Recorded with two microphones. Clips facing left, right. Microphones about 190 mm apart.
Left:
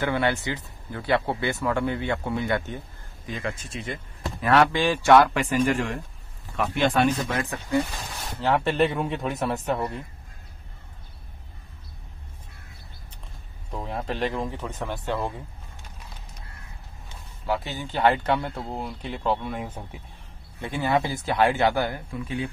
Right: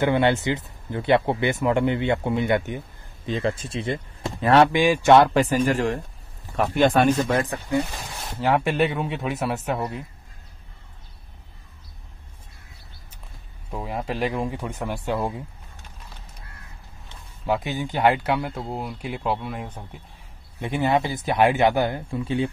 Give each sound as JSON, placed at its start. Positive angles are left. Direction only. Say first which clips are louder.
{"t": 0.0, "sound": "speech", "louder": "right 5 dB", "side_deg": -20}
{"t": 3.3, "sound": "speech", "louder": "right 7 dB", "side_deg": -30}
{"t": 4.7, "sound": "speech", "louder": "right 4 dB", "side_deg": -15}
{"t": 5.1, "sound": "a man's voice", "louder": "right 1 dB", "side_deg": -30}
{"t": 7.2, "sound": "a man's voice", "louder": "right 5 dB", "side_deg": -35}
{"t": 8.0, "sound": "speech", "louder": "right 2 dB", "side_deg": -15}
{"t": 13.7, "sound": "speech", "louder": "right 2 dB", "side_deg": -5}
{"t": 17.5, "sound": "speech", "louder": "right 4 dB", "side_deg": -15}
{"t": 20.6, "sound": "speech", "louder": "right 2 dB", "side_deg": -20}